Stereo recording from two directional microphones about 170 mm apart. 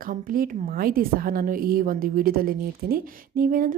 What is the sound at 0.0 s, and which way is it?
A woman's voice, 55° right (ahead or behind).